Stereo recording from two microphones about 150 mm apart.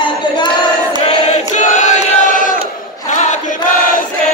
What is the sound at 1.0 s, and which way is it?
Chant, 55° left (ahead or behind).